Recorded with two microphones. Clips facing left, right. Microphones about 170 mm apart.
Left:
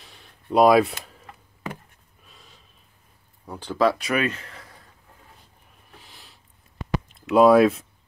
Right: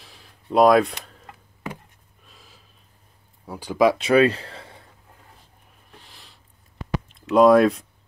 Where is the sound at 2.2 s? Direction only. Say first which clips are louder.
Right 1 dB; centre (ahead or behind).